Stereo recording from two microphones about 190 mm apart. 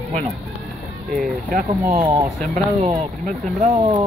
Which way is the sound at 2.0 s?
25° right (ahead or behind).